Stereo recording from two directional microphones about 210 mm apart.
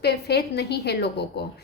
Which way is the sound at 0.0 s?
50° left (ahead or behind).